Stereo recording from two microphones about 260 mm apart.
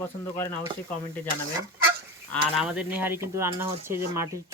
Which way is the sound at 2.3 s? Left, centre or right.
Centre.